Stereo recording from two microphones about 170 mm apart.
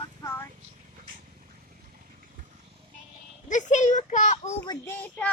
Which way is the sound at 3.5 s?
45° left (ahead or behind).